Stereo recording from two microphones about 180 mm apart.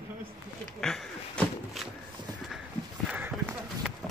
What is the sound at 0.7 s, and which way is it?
Speech, 5° left (ahead or behind).